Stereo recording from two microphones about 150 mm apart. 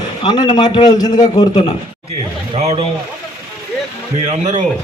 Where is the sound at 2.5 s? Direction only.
45° right (ahead or behind).